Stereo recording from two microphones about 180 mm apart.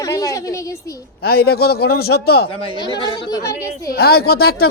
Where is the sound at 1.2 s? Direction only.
60° left (ahead or behind).